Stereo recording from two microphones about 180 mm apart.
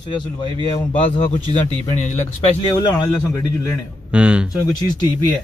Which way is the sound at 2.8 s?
20° left (ahead or behind).